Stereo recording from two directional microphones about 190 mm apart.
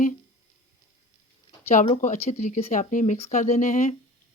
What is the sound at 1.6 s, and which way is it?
Speech, 35° left (ahead or behind).